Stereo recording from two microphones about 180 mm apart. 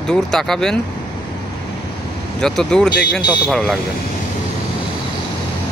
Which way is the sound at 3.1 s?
70° left (ahead or behind).